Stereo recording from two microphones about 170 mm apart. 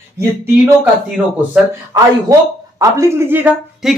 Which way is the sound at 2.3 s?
20° right (ahead or behind).